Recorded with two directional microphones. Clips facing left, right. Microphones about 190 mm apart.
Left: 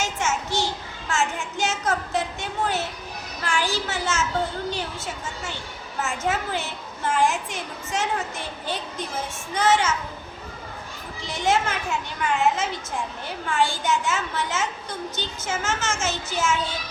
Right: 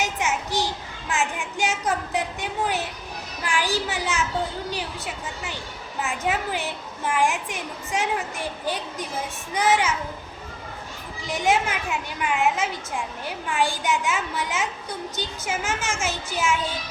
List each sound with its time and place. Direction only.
0.0 s children playing: 15° right (ahead or behind)
1.1 s child singing: 15° right (ahead or behind)
1.5 s a woman's voice: 15° right (ahead or behind)
6.0 s a woman's voice: 15° right (ahead or behind)
11.2 s a woman's voice: 15° right (ahead or behind)
13.5 s a woman's voice: 15° right (ahead or behind)